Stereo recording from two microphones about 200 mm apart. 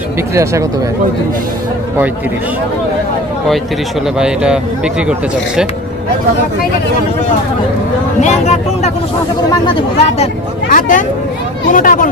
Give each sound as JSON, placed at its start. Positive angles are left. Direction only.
{"t": 0.3, "sound": "speech", "side_deg": -15}
{"t": 4.2, "sound": "speech", "side_deg": -5}
{"t": 8.2, "sound": "speech", "side_deg": 35}